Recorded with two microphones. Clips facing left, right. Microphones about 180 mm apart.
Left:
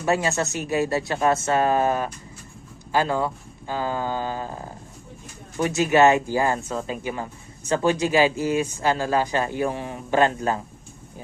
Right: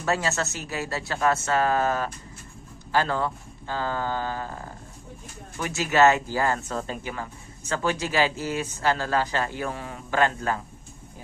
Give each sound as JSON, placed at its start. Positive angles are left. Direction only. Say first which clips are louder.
{"t": 0.0, "sound": "speech", "louder": "left 4 dB", "side_deg": 15}